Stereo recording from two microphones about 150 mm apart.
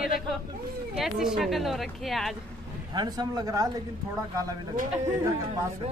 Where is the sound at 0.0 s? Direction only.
Centre (ahead or behind).